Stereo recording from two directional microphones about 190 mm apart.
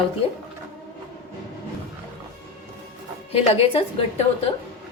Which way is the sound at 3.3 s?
30° left (ahead or behind).